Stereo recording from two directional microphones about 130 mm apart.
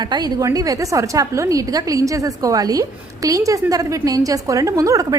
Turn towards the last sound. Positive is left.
turn(degrees=-25)  # may be behind; listen again after turning